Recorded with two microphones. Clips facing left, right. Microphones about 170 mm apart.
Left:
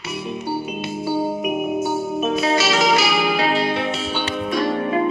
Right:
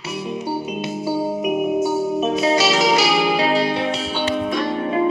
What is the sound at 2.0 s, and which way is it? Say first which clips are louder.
Music: right 2 dB; 40° right (ahead or behind).